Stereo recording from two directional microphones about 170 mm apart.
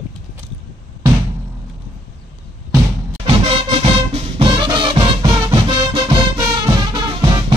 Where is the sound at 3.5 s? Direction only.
35° right (ahead or behind).